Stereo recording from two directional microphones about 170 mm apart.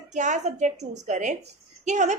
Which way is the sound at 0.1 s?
45° right (ahead or behind).